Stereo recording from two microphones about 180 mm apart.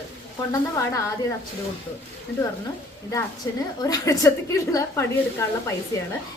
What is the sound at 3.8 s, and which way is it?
A woman's voice, 20° left (ahead or behind).